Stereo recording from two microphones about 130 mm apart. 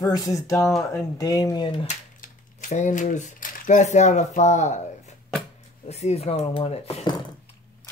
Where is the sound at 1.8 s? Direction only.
75° left (ahead or behind).